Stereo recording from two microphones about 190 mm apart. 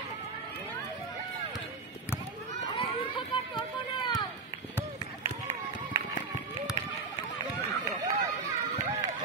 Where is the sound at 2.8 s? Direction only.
25° left (ahead or behind).